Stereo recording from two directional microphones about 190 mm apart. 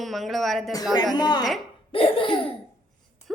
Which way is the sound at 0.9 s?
20° left (ahead or behind).